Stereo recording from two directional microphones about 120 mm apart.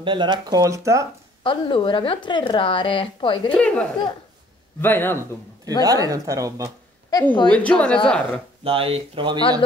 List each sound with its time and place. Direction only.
0.0 s speech: 40° right (ahead or behind); by 1.0 s 25° right (ahead or behind)
1.4 s speech: 45° left (ahead or behind)
3.5 s a woman's voice: 10° left (ahead or behind)
4.8 s a woman's voice: 15° left (ahead or behind)
5.7 s speech: 30° right (ahead or behind)
7.1 s a woman's voice: 30° left (ahead or behind)
7.4 s a woman's voice: 10° left (ahead or behind)
8.6 s speech: 50° right (ahead or behind)